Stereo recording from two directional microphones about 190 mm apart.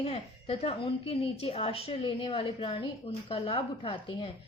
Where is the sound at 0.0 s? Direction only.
30° left (ahead or behind).